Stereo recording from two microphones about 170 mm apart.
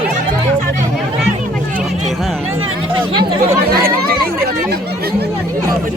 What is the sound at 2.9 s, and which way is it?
Speech, 30° right (ahead or behind).